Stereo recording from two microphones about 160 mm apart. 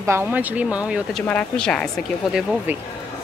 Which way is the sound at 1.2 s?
5° left (ahead or behind).